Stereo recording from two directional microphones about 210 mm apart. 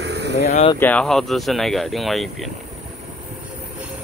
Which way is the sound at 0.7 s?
5° left (ahead or behind).